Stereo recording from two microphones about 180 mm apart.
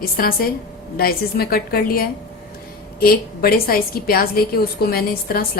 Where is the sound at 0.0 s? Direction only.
55° left (ahead or behind).